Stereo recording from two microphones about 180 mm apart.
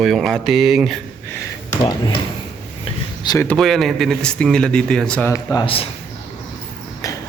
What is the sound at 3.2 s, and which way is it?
Speech, 20° left (ahead or behind).